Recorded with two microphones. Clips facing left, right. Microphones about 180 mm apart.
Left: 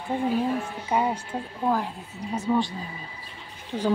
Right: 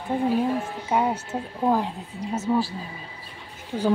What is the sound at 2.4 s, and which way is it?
Speech, 5° right (ahead or behind).